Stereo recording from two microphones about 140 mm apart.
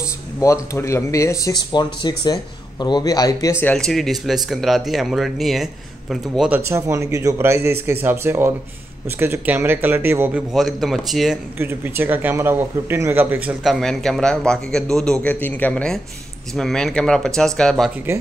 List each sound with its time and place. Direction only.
0.4 s speech: 20° left (ahead or behind)
3.7 s speech: 5° left (ahead or behind)
6.7 s a man's voice: 20° right (ahead or behind)
10.5 s speech: centre (ahead or behind)
11.5 s a man's voice: 15° right (ahead or behind)
13.7 s speech: centre (ahead or behind)